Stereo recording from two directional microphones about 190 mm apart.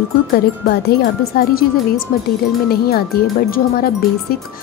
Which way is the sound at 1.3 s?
55° left (ahead or behind).